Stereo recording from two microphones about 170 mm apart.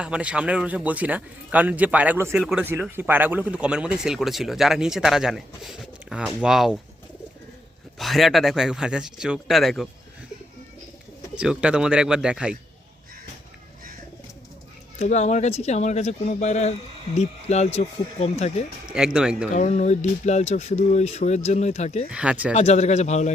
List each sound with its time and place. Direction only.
0.0 s speech: 5° right (ahead or behind)
7.9 s speech: centre (ahead or behind)
11.3 s speech: 5° right (ahead or behind)
14.9 s speech: 40° left (ahead or behind)
18.9 s speech: 5° right (ahead or behind)
19.5 s speech: 45° left (ahead or behind)
22.1 s speech: 5° right (ahead or behind)
22.5 s speech: 40° left (ahead or behind)